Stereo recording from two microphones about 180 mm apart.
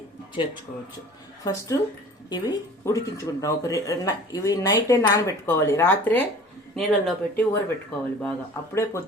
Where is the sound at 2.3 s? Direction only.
20° left (ahead or behind).